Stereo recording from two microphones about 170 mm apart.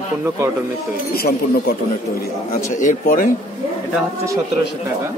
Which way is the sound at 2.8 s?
50° left (ahead or behind).